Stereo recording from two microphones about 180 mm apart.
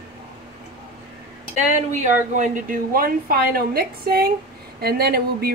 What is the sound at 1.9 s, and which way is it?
Speech, 45° right (ahead or behind).